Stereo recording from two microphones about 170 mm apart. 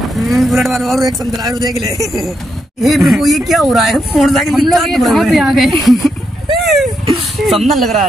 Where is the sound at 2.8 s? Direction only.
Centre (ahead or behind).